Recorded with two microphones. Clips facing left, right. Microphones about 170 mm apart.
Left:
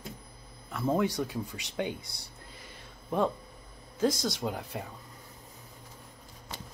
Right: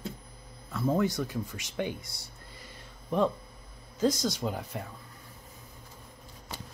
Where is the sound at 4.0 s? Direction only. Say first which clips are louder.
Right 1 dB; 10° left (ahead or behind).